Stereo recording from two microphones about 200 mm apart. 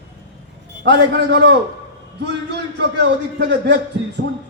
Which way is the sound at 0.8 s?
55° right (ahead or behind).